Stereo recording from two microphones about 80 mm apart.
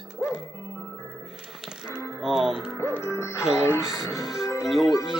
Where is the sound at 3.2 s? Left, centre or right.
Left.